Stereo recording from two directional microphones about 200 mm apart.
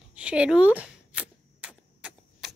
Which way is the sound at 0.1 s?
5° right (ahead or behind).